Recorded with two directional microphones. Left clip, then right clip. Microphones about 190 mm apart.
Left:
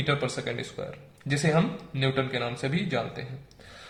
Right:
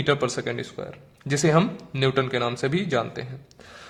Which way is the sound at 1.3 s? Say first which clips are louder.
Right 5 dB; 40° right (ahead or behind).